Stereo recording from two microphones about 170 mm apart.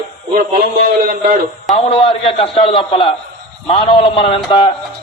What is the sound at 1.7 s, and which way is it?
A man's voice, 35° left (ahead or behind).